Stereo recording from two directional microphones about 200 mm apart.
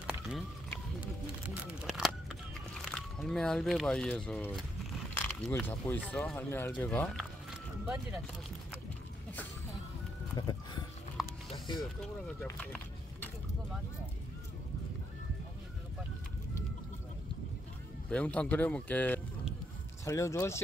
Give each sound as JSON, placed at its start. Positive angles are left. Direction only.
{"t": 1.9, "sound": "a sound", "side_deg": 0}
{"t": 2.8, "sound": "speech", "side_deg": 0}
{"t": 5.1, "sound": "biting", "side_deg": 10}
{"t": 5.7, "sound": "speech", "side_deg": 10}
{"t": 7.8, "sound": "speech", "side_deg": -5}
{"t": 10.3, "sound": "music", "side_deg": 20}
{"t": 11.2, "sound": "music", "side_deg": 0}
{"t": 11.5, "sound": "music", "side_deg": 25}
{"t": 18.1, "sound": "speech", "side_deg": 5}